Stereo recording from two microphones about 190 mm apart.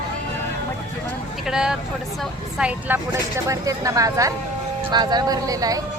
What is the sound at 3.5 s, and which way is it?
Speech, 15° right (ahead or behind).